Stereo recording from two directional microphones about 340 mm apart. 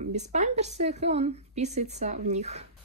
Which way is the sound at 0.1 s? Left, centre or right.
Right.